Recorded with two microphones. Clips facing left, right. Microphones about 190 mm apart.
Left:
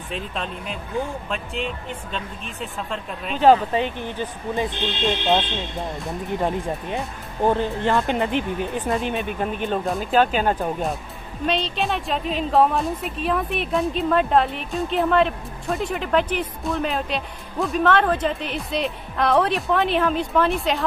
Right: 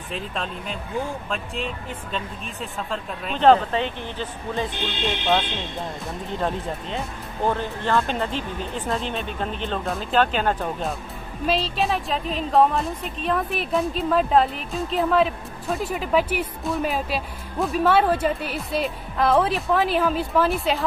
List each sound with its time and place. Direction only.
0.1 s a woman's voice: centre (ahead or behind)
6.4 s speech: 15° left (ahead or behind)
11.4 s a woman's voice: 5° right (ahead or behind)